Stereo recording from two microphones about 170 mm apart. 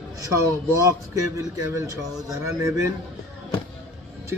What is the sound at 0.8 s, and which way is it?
A man's voice, 20° right (ahead or behind).